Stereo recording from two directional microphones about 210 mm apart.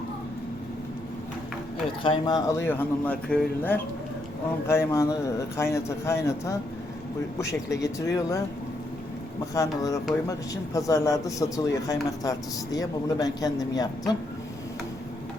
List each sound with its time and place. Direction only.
2.0 s a man's voice: 20° left (ahead or behind)
9.6 s a man's voice: 15° left (ahead or behind)